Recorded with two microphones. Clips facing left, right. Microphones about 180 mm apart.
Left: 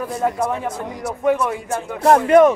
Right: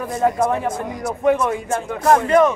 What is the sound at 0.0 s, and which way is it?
A man's voice, 5° left (ahead or behind).